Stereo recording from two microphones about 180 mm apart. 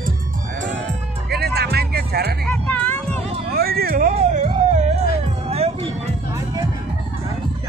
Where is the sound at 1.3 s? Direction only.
60° right (ahead or behind).